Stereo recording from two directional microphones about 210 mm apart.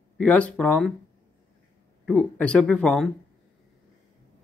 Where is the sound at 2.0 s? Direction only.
5° left (ahead or behind).